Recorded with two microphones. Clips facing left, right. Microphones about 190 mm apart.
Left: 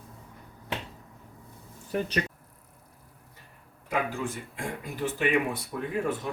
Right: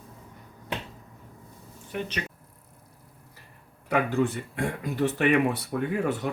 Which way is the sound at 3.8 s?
70° right (ahead or behind).